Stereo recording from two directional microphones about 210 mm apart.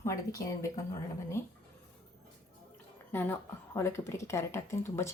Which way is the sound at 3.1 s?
10° left (ahead or behind).